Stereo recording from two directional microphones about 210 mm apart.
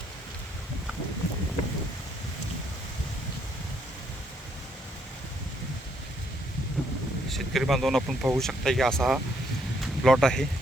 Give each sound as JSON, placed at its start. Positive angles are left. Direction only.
{"t": 6.8, "sound": "wind noise", "side_deg": 0}
{"t": 7.3, "sound": "speech", "side_deg": 0}
{"t": 9.8, "sound": "a sound", "side_deg": 0}